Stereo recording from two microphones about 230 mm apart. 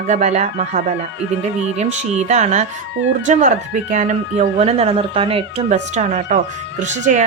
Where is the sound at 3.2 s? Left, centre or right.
Right.